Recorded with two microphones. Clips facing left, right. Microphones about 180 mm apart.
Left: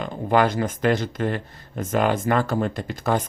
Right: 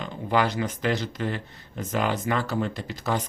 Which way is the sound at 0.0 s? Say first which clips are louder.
Left 5 dB; 50° left (ahead or behind).